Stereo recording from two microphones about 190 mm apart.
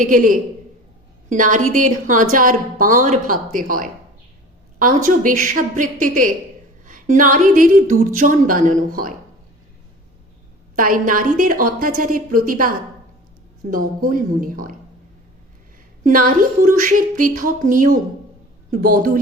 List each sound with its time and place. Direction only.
0.0 s a woman's voice: 45° right (ahead or behind)
5.0 s a woman's voice: 45° right (ahead or behind)
10.8 s a woman's voice: 45° right (ahead or behind)
16.0 s a woman's voice: 45° right (ahead or behind)